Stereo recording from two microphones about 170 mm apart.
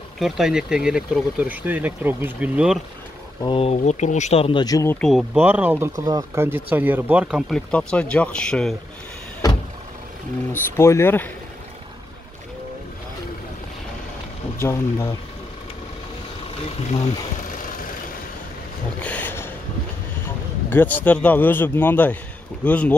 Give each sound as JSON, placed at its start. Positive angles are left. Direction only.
{"t": 0.2, "sound": "speech", "side_deg": -5}
{"t": 3.4, "sound": "speech", "side_deg": 35}
{"t": 5.0, "sound": "speech", "side_deg": 0}
{"t": 5.4, "sound": "speech", "side_deg": -10}
{"t": 10.5, "sound": "speech", "side_deg": 15}
{"t": 14.6, "sound": "speech", "side_deg": 15}
{"t": 18.9, "sound": "a sound", "side_deg": 10}
{"t": 20.2, "sound": "a man's voice", "side_deg": 10}